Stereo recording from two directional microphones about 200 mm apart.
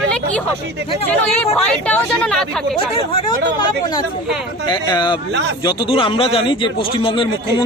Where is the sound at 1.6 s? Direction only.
5° left (ahead or behind).